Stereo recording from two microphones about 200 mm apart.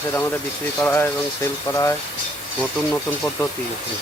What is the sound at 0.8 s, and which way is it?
Speech, 10° left (ahead or behind).